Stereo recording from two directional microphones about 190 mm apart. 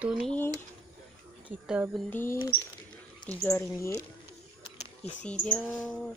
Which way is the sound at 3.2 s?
25° left (ahead or behind).